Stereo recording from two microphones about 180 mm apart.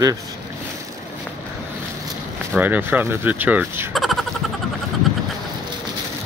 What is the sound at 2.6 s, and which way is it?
Speech, 10° right (ahead or behind).